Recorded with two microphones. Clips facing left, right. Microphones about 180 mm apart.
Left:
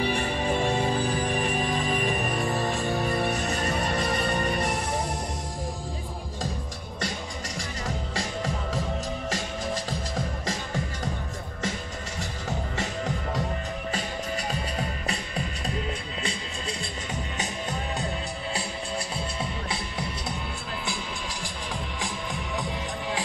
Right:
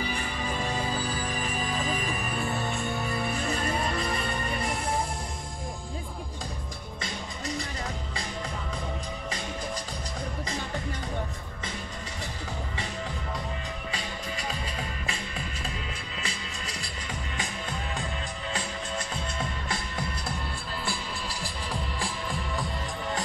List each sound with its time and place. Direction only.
0.0 s music: 65° left (ahead or behind)
2.4 s music: 35° left (ahead or behind)
3.7 s music: 70° left (ahead or behind)
12.7 s music: 45° left (ahead or behind)
14.5 s music: 40° left (ahead or behind)
20.8 s music: centre (ahead or behind)